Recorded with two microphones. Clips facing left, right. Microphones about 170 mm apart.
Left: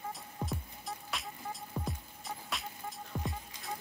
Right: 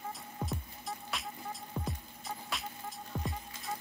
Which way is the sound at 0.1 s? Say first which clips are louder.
Even; centre (ahead or behind).